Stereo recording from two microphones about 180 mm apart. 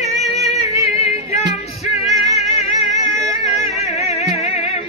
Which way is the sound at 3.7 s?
35° left (ahead or behind).